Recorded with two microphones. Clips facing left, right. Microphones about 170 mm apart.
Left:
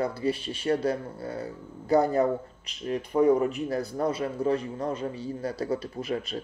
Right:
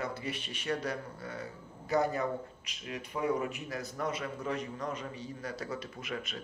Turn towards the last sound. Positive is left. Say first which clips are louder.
# left 9 dB
turn(degrees=35)  # may be behind; listen again after turning